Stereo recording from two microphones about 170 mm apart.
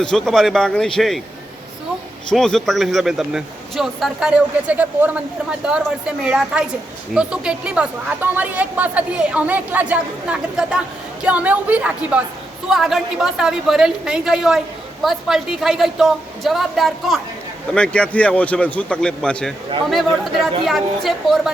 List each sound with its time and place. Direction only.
0.0 s a man's voice: 5° left (ahead or behind)
2.3 s a man's voice: centre (ahead or behind)